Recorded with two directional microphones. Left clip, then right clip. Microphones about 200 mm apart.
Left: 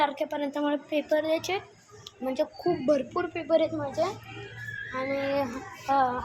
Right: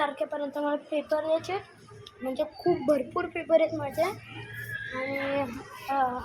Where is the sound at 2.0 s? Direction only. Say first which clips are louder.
Left 2 dB; 20° left (ahead or behind).